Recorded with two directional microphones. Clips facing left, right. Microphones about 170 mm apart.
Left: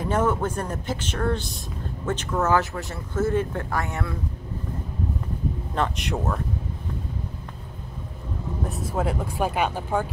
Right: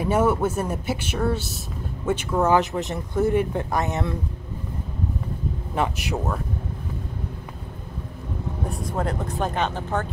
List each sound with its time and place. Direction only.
0.0 s speech: 10° right (ahead or behind)
5.8 s speech: centre (ahead or behind)
8.6 s speech: 5° left (ahead or behind)